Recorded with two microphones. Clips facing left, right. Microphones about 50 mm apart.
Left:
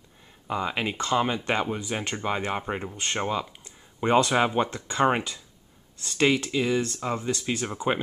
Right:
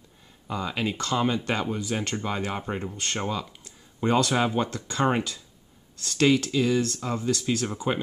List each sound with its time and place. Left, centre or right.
0.5 s speech: left